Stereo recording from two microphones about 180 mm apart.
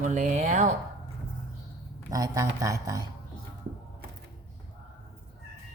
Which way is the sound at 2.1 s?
20° right (ahead or behind).